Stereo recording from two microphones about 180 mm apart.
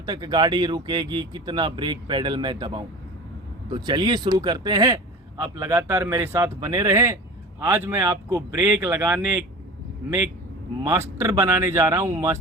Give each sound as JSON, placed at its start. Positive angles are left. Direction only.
{"t": 0.0, "sound": "speech", "side_deg": -25}
{"t": 10.8, "sound": "speech", "side_deg": -15}